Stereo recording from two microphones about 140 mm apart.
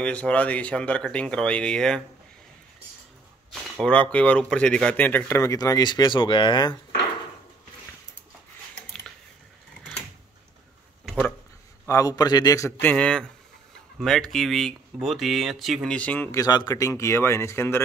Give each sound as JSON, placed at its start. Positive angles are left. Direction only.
{"t": 0.0, "sound": "speech", "side_deg": 10}
{"t": 3.8, "sound": "speech", "side_deg": 10}
{"t": 11.9, "sound": "speech", "side_deg": 25}
{"t": 16.3, "sound": "speech", "side_deg": 25}